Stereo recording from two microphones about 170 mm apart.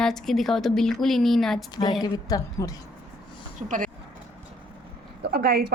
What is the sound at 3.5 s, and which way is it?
Speech, 50° right (ahead or behind).